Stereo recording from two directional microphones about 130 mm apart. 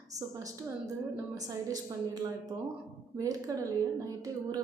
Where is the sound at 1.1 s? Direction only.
25° right (ahead or behind).